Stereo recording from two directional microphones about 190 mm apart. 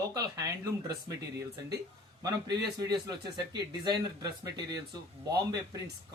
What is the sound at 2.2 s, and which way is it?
Speech, 20° right (ahead or behind).